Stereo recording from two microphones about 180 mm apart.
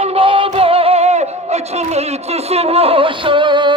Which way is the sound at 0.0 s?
30° right (ahead or behind).